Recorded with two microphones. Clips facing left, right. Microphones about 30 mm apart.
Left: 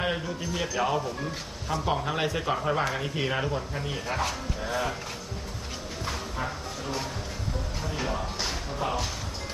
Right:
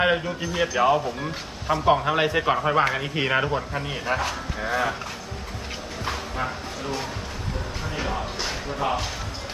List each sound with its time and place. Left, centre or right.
0.0 s a man's voice: right
6.1 s a sound: right
7.9 s a man's voice: right